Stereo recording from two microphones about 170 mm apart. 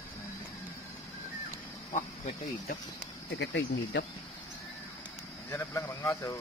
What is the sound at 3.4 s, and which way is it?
Speech, 90° left.